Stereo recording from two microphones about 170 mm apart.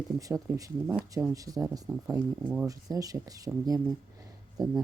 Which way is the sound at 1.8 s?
10° right (ahead or behind).